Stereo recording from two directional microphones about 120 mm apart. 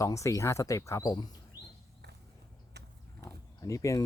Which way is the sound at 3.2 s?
25° left (ahead or behind).